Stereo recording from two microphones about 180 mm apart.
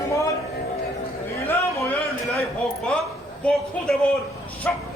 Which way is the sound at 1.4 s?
10° left (ahead or behind).